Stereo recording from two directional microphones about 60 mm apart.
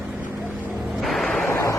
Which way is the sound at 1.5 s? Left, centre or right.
Left.